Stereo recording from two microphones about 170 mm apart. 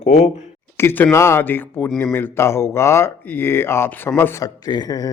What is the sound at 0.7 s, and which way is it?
Speech, 10° left (ahead or behind).